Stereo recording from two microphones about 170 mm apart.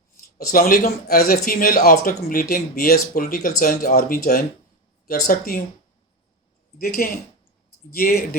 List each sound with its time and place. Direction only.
0.2 s speech: 55° left (ahead or behind)
6.7 s speech: 60° left (ahead or behind)